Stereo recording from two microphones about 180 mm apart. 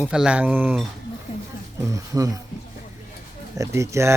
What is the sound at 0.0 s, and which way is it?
Speech, 5° right (ahead or behind).